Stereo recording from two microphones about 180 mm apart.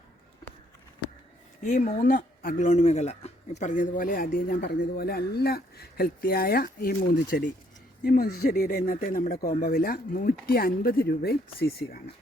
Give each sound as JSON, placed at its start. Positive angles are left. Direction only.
{"t": 1.6, "sound": "speech", "side_deg": 45}
{"t": 9.5, "sound": "speech", "side_deg": 40}
{"t": 9.7, "sound": "speech", "side_deg": 55}